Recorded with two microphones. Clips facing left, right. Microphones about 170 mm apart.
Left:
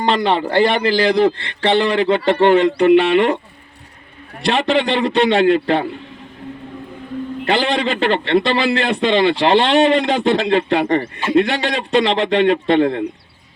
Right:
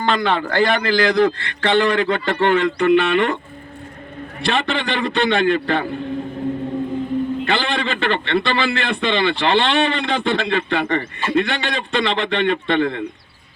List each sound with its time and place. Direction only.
0.0 s a man's voice: 30° left (ahead or behind)
4.4 s a man's voice: 35° left (ahead or behind)
7.4 s a man's voice: 35° left (ahead or behind)